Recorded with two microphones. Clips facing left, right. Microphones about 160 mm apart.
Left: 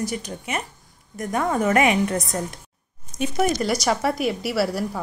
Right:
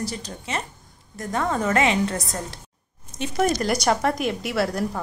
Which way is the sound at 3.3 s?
5° left (ahead or behind).